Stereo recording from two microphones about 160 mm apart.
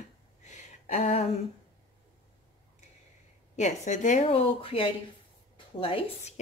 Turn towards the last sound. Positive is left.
turn(degrees=40)  # may be behind; listen again after turning